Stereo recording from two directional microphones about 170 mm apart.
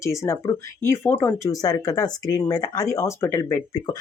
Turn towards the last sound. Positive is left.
turn(degrees=20)  # may be behind; listen again after turning